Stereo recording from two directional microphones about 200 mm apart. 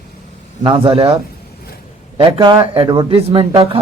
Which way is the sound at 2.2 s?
25° right (ahead or behind).